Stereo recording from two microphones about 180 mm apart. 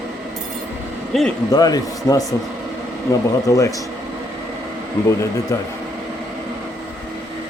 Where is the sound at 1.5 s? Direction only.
20° left (ahead or behind).